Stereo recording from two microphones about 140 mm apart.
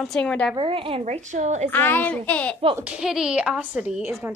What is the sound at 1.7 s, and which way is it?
Speech, 15° left (ahead or behind).